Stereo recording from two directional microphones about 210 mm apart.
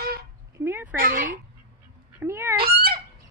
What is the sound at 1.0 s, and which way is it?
Speech, 40° right (ahead or behind).